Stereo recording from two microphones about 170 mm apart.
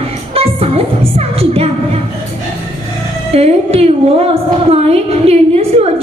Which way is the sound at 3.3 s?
35° right (ahead or behind).